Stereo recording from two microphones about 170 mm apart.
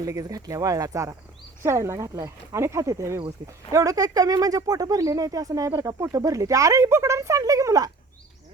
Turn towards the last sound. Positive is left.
turn(degrees=-20)  # may be behind; listen again after turning